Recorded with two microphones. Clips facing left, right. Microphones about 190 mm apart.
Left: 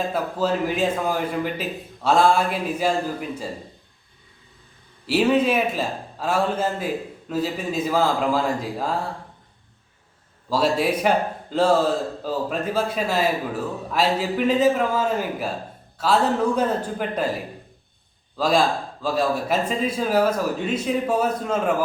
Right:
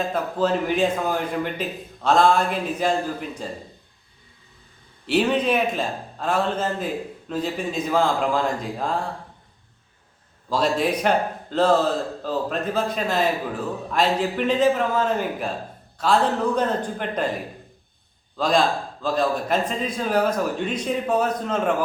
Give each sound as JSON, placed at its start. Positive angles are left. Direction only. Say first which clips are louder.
{"t": 0.1, "sound": "a man's voice", "louder": "right 1 dB", "side_deg": 5}
{"t": 5.0, "sound": "a man's voice", "louder": "left 2 dB", "side_deg": 5}
{"t": 10.5, "sound": "a man's voice", "louder": "left 1 dB", "side_deg": 5}
{"t": 18.3, "sound": "a man's voice", "louder": "even", "side_deg": 5}